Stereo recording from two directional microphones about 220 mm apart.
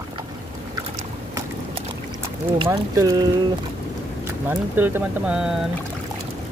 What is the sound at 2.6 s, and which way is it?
Speech, 15° right (ahead or behind).